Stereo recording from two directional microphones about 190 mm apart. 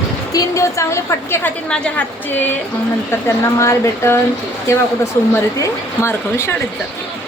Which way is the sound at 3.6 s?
15° left (ahead or behind).